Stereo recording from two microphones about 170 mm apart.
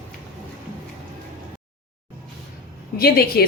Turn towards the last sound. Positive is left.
turn(degrees=65)  # may be behind; listen again after turning